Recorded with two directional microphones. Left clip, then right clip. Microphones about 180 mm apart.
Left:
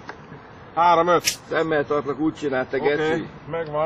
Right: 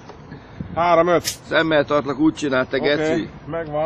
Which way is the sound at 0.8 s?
25° right (ahead or behind).